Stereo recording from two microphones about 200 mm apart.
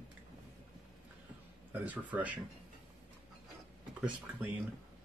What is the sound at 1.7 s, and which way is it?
Speech, 10° right (ahead or behind).